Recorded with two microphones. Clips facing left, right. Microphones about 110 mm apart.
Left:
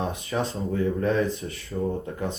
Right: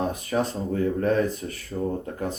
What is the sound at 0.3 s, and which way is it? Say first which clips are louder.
Speech: right 1 dB; 40° right (ahead or behind).